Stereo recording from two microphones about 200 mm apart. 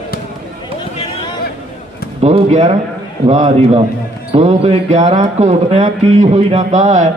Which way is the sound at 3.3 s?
35° right (ahead or behind).